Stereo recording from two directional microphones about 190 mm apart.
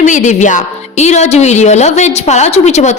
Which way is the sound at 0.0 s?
40° left (ahead or behind).